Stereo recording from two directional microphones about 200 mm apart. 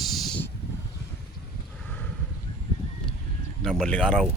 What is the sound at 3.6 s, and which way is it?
Speech, 5° left (ahead or behind).